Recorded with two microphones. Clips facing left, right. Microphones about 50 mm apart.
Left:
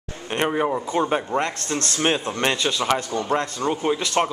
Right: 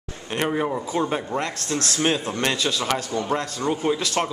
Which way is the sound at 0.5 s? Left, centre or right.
Centre.